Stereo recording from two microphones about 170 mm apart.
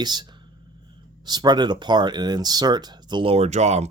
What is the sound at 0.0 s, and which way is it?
Speech, 25° right (ahead or behind).